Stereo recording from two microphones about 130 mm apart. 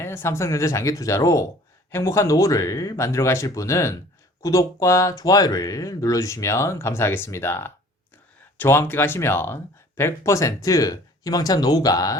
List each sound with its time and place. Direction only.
0.0 s speech: 20° left (ahead or behind)